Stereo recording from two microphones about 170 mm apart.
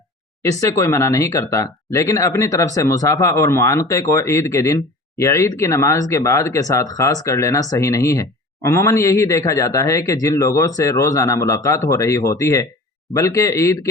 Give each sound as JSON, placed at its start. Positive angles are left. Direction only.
{"t": 0.6, "sound": "speech", "side_deg": 15}